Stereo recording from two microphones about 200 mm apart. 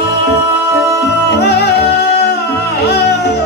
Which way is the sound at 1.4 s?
55° left (ahead or behind).